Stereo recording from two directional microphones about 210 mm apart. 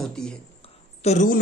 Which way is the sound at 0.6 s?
30° left (ahead or behind).